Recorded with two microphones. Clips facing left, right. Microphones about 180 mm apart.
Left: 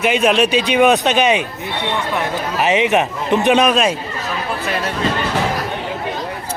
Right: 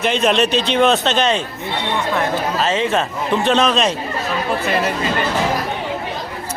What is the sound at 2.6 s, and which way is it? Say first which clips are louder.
Speech: left 5 dB; 15° left (ahead or behind).